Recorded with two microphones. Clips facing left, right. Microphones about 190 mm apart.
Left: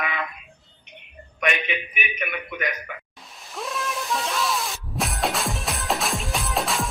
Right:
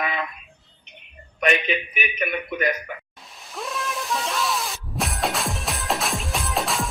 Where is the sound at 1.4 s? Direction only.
35° right (ahead or behind).